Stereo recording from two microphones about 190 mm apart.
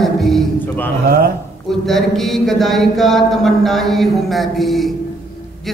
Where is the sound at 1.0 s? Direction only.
55° right (ahead or behind).